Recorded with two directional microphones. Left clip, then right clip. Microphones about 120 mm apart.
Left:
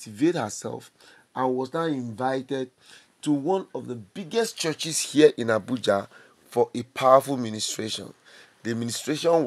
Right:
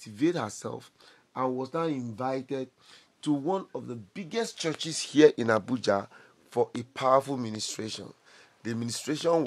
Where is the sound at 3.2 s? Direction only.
5° left (ahead or behind).